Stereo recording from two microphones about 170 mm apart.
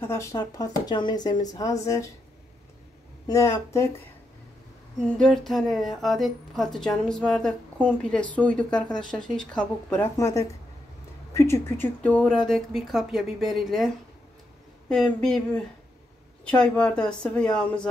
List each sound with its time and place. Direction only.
0.0 s speech: 15° left (ahead or behind)
3.3 s speech: 15° left (ahead or behind)
5.1 s speech: 5° left (ahead or behind)
14.9 s speech: 5° left (ahead or behind)